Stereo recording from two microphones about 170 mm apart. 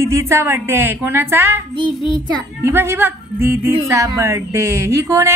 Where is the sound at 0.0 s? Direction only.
15° right (ahead or behind).